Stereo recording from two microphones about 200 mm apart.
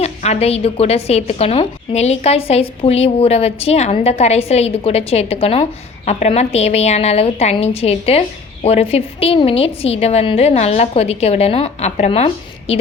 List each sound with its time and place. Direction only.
0.0 s a woman's voice: 30° left (ahead or behind)